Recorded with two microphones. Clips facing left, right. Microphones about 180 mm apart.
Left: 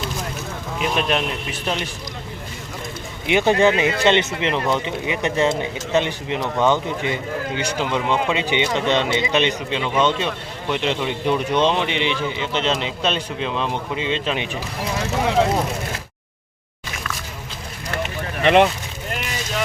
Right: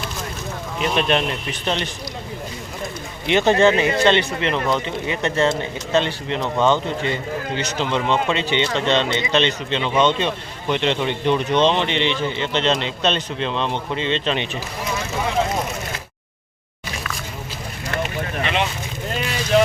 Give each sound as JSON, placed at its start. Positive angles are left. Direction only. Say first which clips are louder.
{"t": 0.8, "sound": "a man's voice", "louder": "right 2 dB", "side_deg": 5}
{"t": 3.2, "sound": "speech", "louder": "right 1 dB", "side_deg": 10}
{"t": 18.4, "sound": "speech", "louder": "left 10 dB", "side_deg": 55}